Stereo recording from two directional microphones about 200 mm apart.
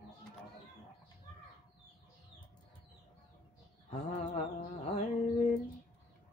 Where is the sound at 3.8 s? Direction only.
35° left (ahead or behind).